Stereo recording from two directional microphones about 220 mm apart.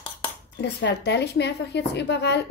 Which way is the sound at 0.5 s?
50° left (ahead or behind).